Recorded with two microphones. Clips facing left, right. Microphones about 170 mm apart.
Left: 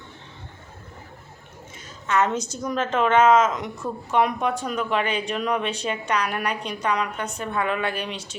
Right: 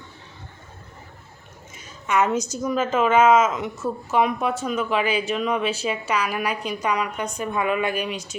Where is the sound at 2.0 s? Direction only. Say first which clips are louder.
Right 1 dB; 10° right (ahead or behind).